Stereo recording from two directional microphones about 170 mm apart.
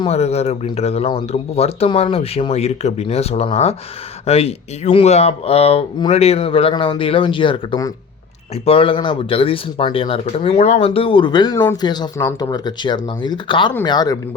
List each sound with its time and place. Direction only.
0.0 s speech: 40° left (ahead or behind)